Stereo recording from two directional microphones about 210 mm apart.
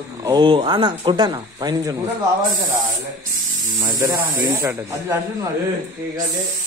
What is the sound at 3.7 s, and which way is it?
A man's voice, 20° right (ahead or behind).